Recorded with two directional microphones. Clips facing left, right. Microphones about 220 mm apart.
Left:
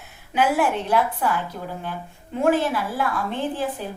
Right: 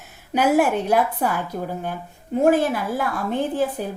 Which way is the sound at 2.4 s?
40° right (ahead or behind).